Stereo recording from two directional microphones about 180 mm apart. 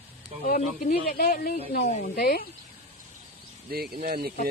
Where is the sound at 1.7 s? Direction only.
45° left (ahead or behind).